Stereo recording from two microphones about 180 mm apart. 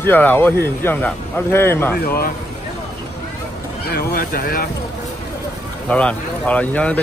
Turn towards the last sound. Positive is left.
turn(degrees=10)  # may be behind; listen again after turning